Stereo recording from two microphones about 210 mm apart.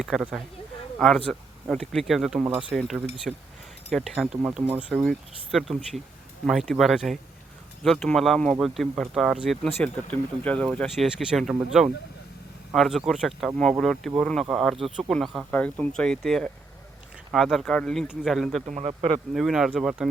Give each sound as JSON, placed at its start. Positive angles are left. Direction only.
{"t": 0.0, "sound": "speech", "side_deg": -5}
{"t": 18.6, "sound": "a man's voice", "side_deg": -30}
{"t": 19.3, "sound": "speech", "side_deg": 0}